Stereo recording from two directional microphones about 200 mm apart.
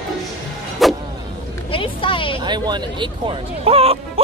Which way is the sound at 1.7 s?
25° left (ahead or behind).